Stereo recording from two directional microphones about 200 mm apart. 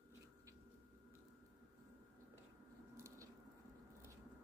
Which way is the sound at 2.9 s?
15° right (ahead or behind).